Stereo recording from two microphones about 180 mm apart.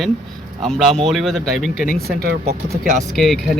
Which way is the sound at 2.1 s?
60° right (ahead or behind).